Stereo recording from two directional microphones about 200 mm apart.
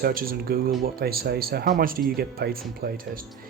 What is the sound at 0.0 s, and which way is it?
Speech, 45° right (ahead or behind).